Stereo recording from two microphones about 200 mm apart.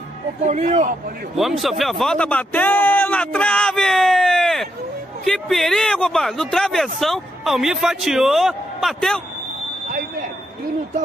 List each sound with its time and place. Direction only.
0.5 s speech: 35° right (ahead or behind)
1.3 s speech: centre (ahead or behind)